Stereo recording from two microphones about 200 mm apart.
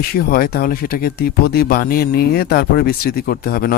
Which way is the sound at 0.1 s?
45° left (ahead or behind).